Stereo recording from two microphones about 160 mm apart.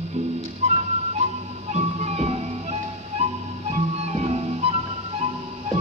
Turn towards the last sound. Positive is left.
turn(degrees=-40)  # may be behind; listen again after turning